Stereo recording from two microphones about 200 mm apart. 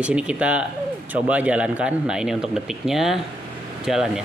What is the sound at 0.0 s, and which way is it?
Speech, 5° right (ahead or behind).